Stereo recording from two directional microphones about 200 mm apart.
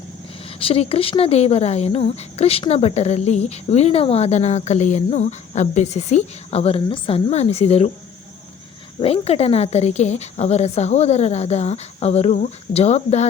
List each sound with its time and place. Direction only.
0.6 s speech: 30° left (ahead or behind)
9.0 s speech: 30° left (ahead or behind)